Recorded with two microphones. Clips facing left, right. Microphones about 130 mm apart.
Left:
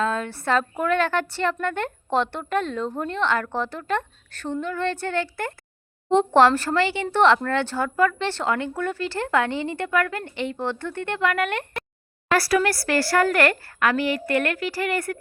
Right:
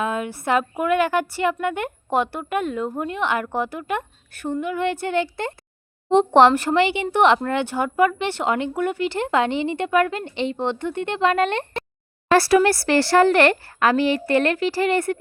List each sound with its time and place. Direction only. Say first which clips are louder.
0.0 s a woman's voice: even; 15° right (ahead or behind)